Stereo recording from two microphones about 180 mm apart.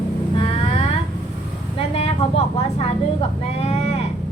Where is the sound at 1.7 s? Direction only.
35° left (ahead or behind).